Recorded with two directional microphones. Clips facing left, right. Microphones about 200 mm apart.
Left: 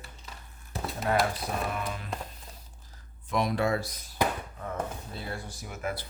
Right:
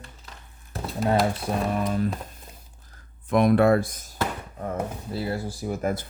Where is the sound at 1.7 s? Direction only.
40° right (ahead or behind).